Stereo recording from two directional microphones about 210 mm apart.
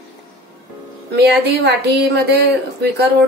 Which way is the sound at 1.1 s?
50° right (ahead or behind).